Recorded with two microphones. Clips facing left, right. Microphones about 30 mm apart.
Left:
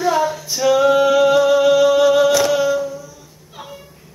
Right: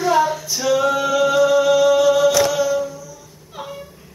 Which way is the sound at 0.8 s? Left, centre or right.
Centre.